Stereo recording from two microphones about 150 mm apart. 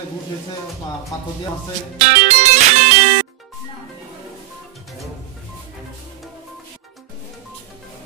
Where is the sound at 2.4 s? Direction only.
50° right (ahead or behind).